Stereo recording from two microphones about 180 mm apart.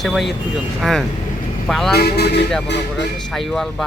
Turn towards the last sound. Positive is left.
turn(degrees=0)  # may be behind; listen again after turning